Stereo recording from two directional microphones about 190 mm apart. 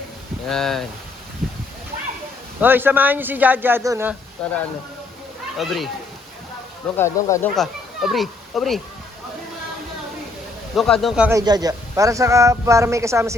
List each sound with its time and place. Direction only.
0.4 s speech: centre (ahead or behind)
1.4 s a sound: centre (ahead or behind)
2.6 s a man's voice: 10° right (ahead or behind)
4.4 s speech: 5° left (ahead or behind)
5.5 s speech: centre (ahead or behind)
6.9 s speech: 10° left (ahead or behind)
7.5 s speech: centre (ahead or behind)
10.8 s speech: centre (ahead or behind)
11.3 s a man's voice: 20° right (ahead or behind)